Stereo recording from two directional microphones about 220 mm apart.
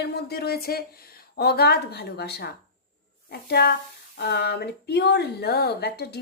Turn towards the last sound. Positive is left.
turn(degrees=45)  # may be behind; listen again after turning